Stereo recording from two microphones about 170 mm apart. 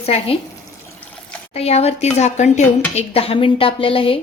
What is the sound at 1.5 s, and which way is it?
Speech, 40° left (ahead or behind).